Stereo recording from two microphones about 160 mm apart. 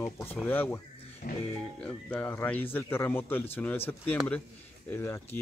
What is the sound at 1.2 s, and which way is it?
Speech, 55° left (ahead or behind).